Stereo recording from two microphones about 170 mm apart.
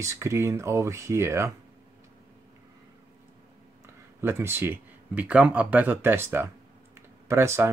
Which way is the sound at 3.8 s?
15° right (ahead or behind).